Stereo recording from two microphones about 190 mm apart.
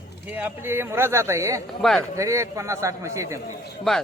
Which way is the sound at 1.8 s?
Centre (ahead or behind).